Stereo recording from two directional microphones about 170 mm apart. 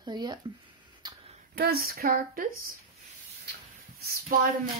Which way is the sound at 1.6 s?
60° right (ahead or behind).